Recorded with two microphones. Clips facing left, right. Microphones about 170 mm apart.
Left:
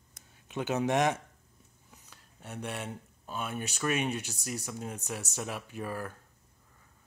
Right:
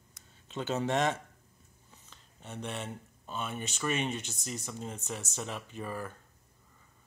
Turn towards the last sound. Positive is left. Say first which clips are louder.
# left 2 dB
turn(degrees=5)  # may be behind; listen again after turning